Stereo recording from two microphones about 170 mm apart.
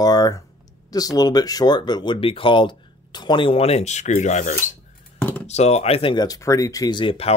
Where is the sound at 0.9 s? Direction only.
20° left (ahead or behind).